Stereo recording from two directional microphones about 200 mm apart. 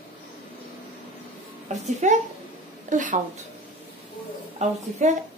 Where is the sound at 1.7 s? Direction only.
35° right (ahead or behind).